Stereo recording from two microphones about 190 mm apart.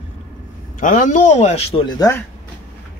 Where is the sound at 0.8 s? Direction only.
40° left (ahead or behind).